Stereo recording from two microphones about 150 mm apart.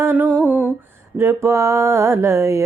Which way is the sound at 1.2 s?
20° right (ahead or behind).